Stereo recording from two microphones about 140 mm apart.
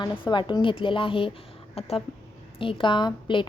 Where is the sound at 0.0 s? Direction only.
35° left (ahead or behind).